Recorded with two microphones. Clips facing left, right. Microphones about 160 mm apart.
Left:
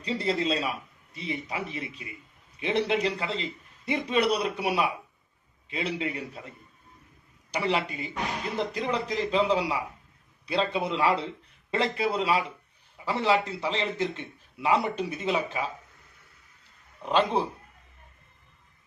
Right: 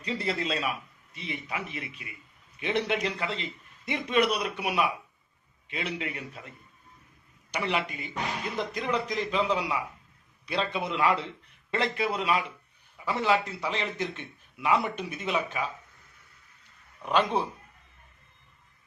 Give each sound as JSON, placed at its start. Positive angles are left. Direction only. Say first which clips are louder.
{"t": 0.0, "sound": "a man's voice", "louder": "left 3 dB", "side_deg": 30}
{"t": 7.5, "sound": "a man's voice", "louder": "left 2 dB", "side_deg": 35}
{"t": 17.0, "sound": "a man's voice", "louder": "left 1 dB", "side_deg": 25}